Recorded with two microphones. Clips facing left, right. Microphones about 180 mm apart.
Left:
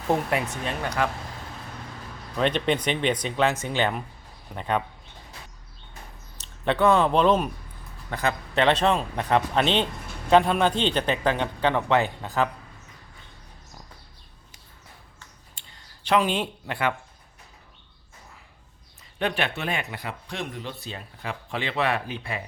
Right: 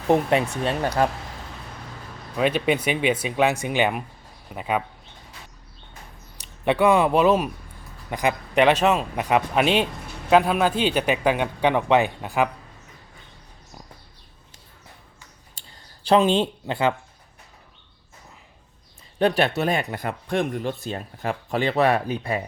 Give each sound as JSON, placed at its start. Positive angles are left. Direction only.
{"t": 0.1, "sound": "speech", "side_deg": -25}
{"t": 2.4, "sound": "a man's voice", "side_deg": -5}
{"t": 6.3, "sound": "speech", "side_deg": -10}
{"t": 15.6, "sound": "a sound", "side_deg": -35}
{"t": 16.0, "sound": "speech", "side_deg": -30}
{"t": 19.2, "sound": "speech", "side_deg": -40}